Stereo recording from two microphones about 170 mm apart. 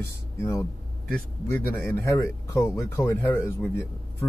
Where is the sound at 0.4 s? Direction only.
15° left (ahead or behind).